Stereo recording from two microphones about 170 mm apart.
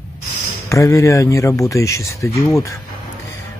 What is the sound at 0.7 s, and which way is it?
Speech, 20° left (ahead or behind).